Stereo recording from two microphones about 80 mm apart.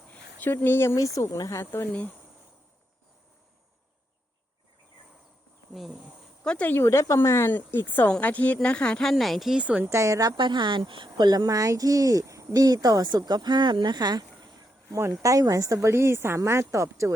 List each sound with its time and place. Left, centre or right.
0.1 s a sound: left
0.9 s speech: left
1.7 s a woman's voice: left
5.7 s speech: centre
6.4 s speech: centre
6.7 s a woman's voice: left; by 9.6 s centre
9.6 s a woman's voice: centre
9.9 s speech: right
10.3 s a woman's voice: right